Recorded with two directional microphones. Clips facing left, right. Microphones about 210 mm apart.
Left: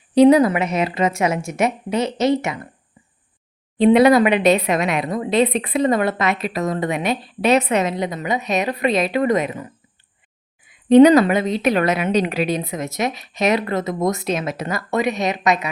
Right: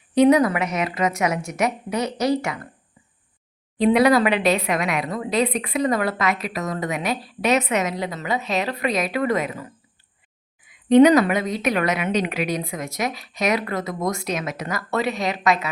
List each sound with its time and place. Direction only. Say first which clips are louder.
0.1 s a woman's voice: left 4 dB; 30° left (ahead or behind)
3.8 s a woman's voice: left 4 dB; 25° left (ahead or behind)
14.8 s a woman's voice: left 3 dB; 15° left (ahead or behind)